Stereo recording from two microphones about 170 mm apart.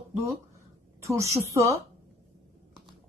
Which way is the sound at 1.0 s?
20° right (ahead or behind).